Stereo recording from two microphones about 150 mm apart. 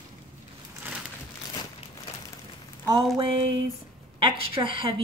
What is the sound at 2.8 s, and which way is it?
Speech, 35° right (ahead or behind).